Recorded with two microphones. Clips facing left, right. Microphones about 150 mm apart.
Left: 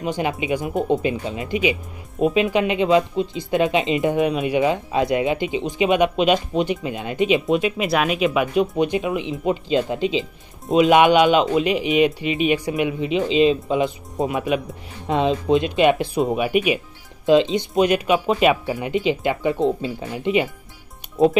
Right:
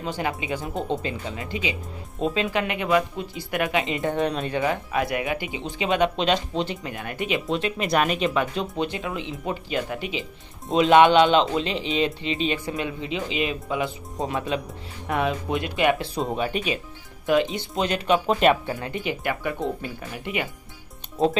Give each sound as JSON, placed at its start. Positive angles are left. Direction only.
{"t": 0.0, "sound": "speech", "side_deg": 20}
{"t": 4.2, "sound": "speech", "side_deg": 10}